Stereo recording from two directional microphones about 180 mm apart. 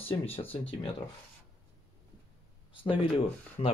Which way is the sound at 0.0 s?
30° left (ahead or behind).